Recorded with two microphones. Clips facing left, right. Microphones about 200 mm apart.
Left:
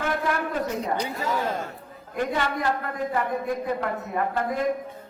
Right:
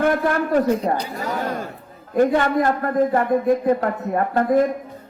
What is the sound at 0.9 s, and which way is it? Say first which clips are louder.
A man's voice: right 2 dB; 45° right (ahead or behind).